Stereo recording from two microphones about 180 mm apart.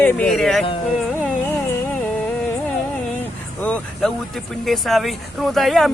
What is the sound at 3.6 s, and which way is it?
Speech, 5° left (ahead or behind).